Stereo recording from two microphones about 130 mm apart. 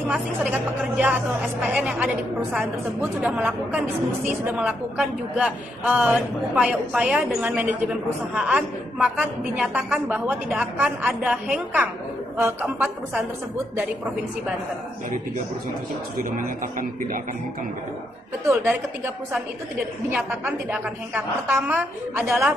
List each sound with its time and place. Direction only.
0.1 s a man's voice: 10° right (ahead or behind)
16.2 s a man's voice: 90° right
18.4 s a man's voice: 20° right (ahead or behind); by 22.5 s 5° right (ahead or behind)